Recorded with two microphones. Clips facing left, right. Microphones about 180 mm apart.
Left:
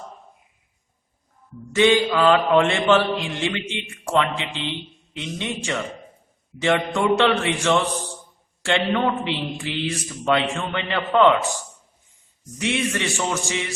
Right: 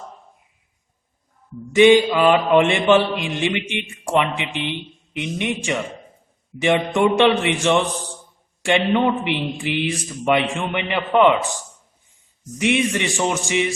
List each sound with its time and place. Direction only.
1.7 s a man's voice: 15° right (ahead or behind)
12.5 s a man's voice: 15° right (ahead or behind)